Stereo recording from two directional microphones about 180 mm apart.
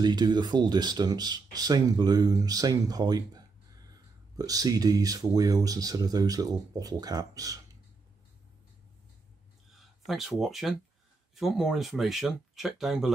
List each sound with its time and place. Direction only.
0.0 s speech: 25° right (ahead or behind)
9.7 s a sound: centre (ahead or behind)
10.4 s speech: centre (ahead or behind)